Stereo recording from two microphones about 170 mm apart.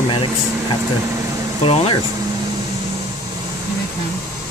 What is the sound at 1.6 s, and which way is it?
Speech, 35° left (ahead or behind).